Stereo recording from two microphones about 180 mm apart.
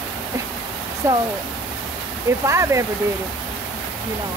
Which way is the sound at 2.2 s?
15° right (ahead or behind).